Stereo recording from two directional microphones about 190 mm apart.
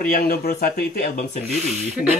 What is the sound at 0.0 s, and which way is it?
Speech, 50° left (ahead or behind).